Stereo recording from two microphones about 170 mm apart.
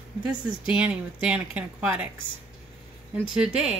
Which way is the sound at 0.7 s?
5° right (ahead or behind).